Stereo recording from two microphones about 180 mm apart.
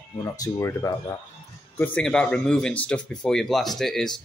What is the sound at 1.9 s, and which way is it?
Speech, 5° left (ahead or behind).